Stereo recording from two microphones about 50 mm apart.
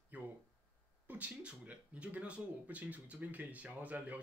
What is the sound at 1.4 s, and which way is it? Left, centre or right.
Speech, right.